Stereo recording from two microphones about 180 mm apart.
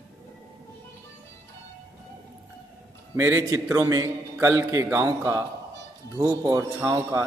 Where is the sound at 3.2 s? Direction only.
15° right (ahead or behind).